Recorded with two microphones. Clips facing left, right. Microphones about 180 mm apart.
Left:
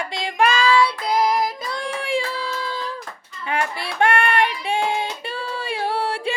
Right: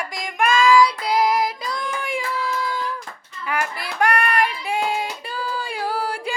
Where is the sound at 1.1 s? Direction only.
20° left (ahead or behind).